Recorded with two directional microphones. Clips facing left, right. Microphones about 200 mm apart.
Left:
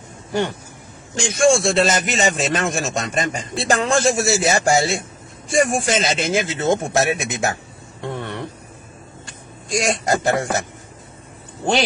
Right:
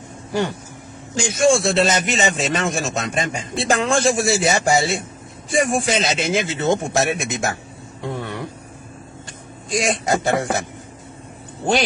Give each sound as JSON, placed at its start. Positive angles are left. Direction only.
{"t": 1.1, "sound": "a man's voice", "side_deg": -5}
{"t": 8.0, "sound": "a sound", "side_deg": -5}
{"t": 9.7, "sound": "a man's voice", "side_deg": 0}